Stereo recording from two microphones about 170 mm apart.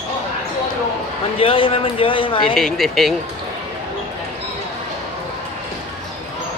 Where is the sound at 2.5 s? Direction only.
Centre (ahead or behind).